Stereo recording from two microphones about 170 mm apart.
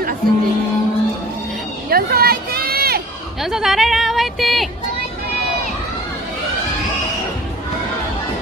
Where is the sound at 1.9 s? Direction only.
65° right (ahead or behind).